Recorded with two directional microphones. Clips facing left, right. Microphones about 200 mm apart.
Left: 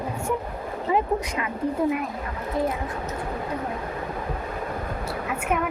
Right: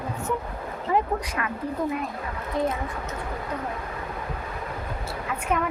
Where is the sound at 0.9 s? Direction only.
20° left (ahead or behind).